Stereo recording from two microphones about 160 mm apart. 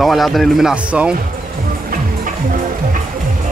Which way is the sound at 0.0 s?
Centre (ahead or behind).